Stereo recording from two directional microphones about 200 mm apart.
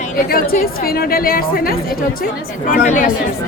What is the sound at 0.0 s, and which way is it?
A woman's voice, 45° left (ahead or behind).